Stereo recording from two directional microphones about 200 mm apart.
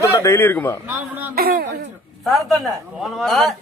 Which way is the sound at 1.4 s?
50° right (ahead or behind).